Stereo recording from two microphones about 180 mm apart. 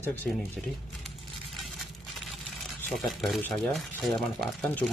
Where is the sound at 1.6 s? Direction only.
Centre (ahead or behind).